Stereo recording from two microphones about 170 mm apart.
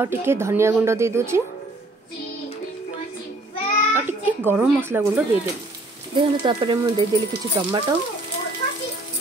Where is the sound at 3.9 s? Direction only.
10° right (ahead or behind).